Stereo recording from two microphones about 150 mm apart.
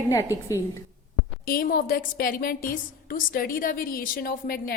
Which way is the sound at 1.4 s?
75° left (ahead or behind).